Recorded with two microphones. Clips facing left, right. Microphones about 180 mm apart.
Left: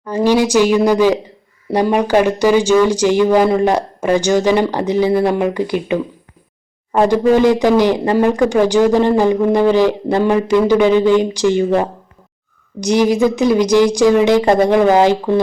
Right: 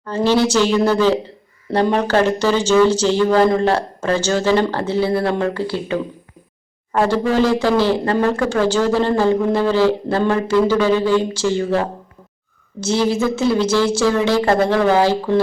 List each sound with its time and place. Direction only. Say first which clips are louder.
0.0 s speech: left 2 dB; 10° left (ahead or behind)